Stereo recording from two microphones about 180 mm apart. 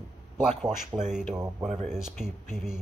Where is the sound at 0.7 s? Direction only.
5° right (ahead or behind).